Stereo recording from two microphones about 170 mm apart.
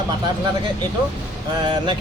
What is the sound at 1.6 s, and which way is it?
Speech, 25° right (ahead or behind).